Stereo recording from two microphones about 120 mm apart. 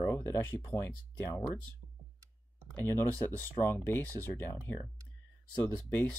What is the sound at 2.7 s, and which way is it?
Speech, 20° left (ahead or behind).